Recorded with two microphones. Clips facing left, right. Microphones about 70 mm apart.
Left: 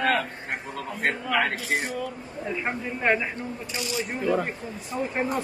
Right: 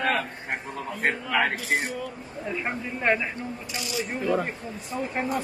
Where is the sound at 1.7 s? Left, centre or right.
Right.